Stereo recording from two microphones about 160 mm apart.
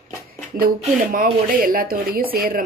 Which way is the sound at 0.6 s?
60° right (ahead or behind).